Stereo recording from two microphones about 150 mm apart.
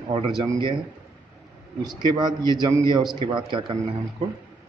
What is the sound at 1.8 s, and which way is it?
A man's voice, 30° right (ahead or behind).